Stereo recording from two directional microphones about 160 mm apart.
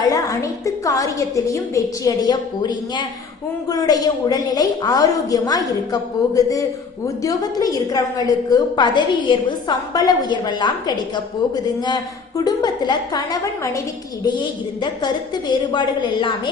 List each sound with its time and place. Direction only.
0.0 s a woman's voice: 20° left (ahead or behind)